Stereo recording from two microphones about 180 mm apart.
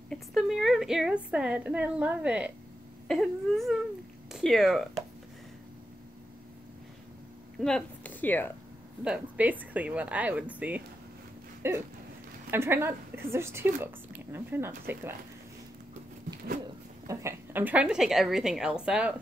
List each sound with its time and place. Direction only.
0.1 s a woman's voice: centre (ahead or behind)
7.6 s speech: 5° left (ahead or behind)
9.0 s speech: 5° right (ahead or behind)
17.1 s a woman's voice: 15° right (ahead or behind)